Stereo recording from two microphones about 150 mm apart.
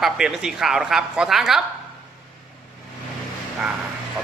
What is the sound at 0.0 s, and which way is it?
A woman's voice, centre (ahead or behind).